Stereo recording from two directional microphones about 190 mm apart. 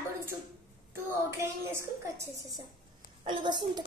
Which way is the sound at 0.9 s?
15° right (ahead or behind).